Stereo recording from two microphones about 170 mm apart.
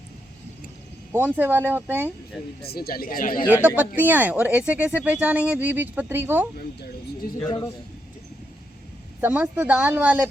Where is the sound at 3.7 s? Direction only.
10° right (ahead or behind).